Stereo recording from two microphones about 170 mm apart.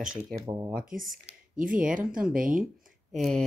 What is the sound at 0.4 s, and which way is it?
Speech, 20° right (ahead or behind).